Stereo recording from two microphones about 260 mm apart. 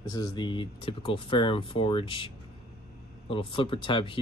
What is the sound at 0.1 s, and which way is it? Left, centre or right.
Speech, centre.